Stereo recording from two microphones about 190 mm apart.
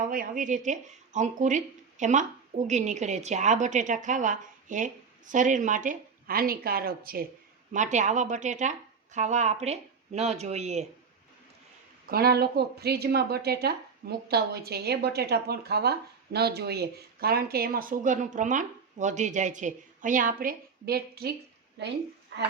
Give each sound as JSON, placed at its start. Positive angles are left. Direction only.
{"t": 0.1, "sound": "a woman's voice", "side_deg": -45}
{"t": 7.7, "sound": "a woman's voice", "side_deg": -40}
{"t": 12.1, "sound": "a woman's voice", "side_deg": -55}